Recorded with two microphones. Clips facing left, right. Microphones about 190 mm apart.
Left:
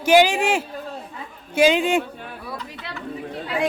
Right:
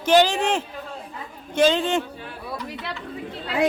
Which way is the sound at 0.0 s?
10° left (ahead or behind).